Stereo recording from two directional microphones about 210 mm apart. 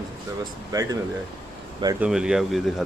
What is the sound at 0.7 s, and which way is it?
Speech, 15° right (ahead or behind).